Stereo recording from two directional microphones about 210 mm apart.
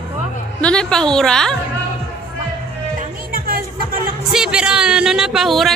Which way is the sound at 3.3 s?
45° right (ahead or behind).